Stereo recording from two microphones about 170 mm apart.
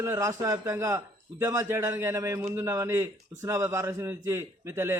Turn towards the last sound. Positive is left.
turn(degrees=-15)  # may be behind; listen again after turning